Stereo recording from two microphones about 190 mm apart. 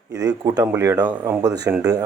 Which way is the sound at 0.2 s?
20° right (ahead or behind).